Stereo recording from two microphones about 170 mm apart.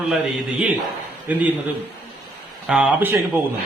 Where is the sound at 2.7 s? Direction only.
5° right (ahead or behind).